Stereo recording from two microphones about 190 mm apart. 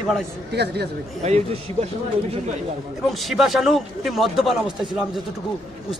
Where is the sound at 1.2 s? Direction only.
35° right (ahead or behind).